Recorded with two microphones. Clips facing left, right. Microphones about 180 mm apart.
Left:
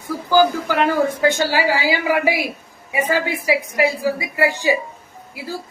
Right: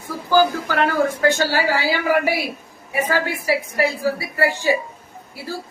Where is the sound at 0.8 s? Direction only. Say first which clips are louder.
Left 1 dB; 15° left (ahead or behind).